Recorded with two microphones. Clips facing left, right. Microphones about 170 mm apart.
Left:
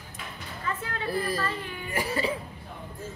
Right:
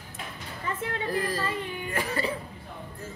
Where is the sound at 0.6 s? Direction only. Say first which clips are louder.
Right 1 dB; 20° right (ahead or behind).